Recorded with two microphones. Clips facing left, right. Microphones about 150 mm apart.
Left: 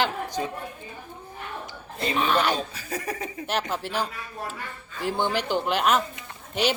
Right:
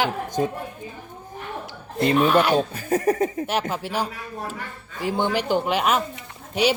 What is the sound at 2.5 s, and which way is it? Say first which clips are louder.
Speech: right 10 dB; 50° right (ahead or behind).